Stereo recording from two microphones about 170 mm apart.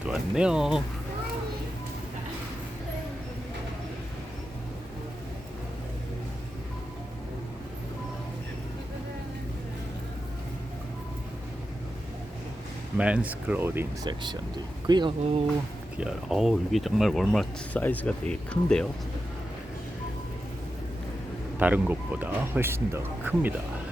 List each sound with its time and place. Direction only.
0.0 s speech: 5° right (ahead or behind)
13.0 s speech: 5° right (ahead or behind)
14.1 s speech: 25° right (ahead or behind)
16.0 s speech: 5° right (ahead or behind)
21.6 s speech: 10° right (ahead or behind)